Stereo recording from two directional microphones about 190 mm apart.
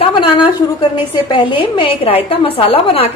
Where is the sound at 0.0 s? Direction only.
25° left (ahead or behind).